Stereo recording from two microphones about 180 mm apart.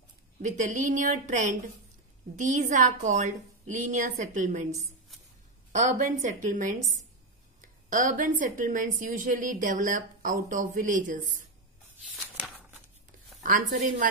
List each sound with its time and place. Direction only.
0.4 s a woman's voice: 45° right (ahead or behind)
5.8 s a woman's voice: 45° right (ahead or behind)
13.4 s a woman's voice: 45° right (ahead or behind)